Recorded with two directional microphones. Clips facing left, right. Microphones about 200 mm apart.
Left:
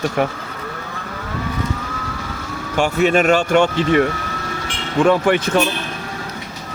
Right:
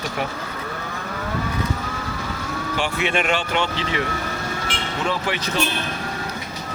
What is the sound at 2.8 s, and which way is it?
Speech, 40° left (ahead or behind).